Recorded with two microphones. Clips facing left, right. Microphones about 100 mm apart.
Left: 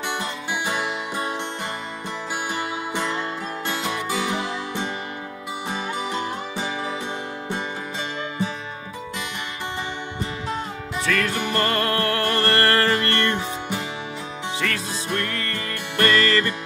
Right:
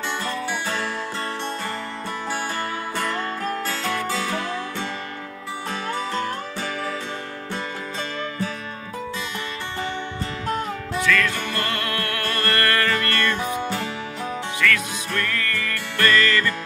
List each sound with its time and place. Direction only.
0.1 s music: 15° left (ahead or behind)
3.0 s music: 20° left (ahead or behind)
11.0 s music: 35° left (ahead or behind)
11.3 s music: 20° left (ahead or behind)
11.6 s music: 35° left (ahead or behind)
14.6 s music: 30° left (ahead or behind)
15.0 s music: 20° left (ahead or behind)